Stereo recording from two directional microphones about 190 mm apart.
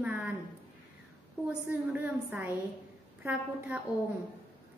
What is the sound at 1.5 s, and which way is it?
A woman's voice, 5° right (ahead or behind).